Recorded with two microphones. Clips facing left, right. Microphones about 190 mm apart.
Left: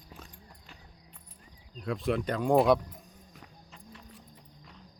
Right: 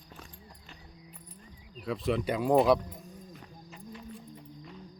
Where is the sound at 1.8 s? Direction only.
Centre (ahead or behind).